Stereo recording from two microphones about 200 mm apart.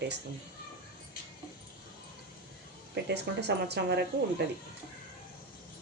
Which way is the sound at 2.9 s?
55° right (ahead or behind).